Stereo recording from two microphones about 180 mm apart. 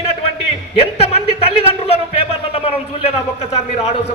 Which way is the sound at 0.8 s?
35° left (ahead or behind).